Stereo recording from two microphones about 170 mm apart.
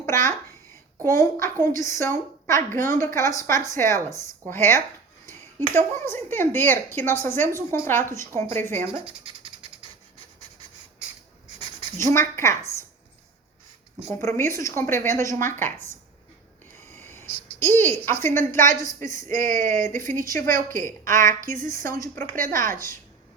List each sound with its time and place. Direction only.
0.0 s speech: 15° left (ahead or behind)
8.9 s speech: 30° right (ahead or behind)
11.9 s speech: 15° left (ahead or behind)
14.1 s a woman's voice: 15° left (ahead or behind)
19.0 s speech: 50° right (ahead or behind)
21.9 s speech: 20° left (ahead or behind)